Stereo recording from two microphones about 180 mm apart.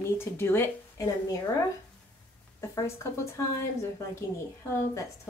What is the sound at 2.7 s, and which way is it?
Speech, 15° left (ahead or behind).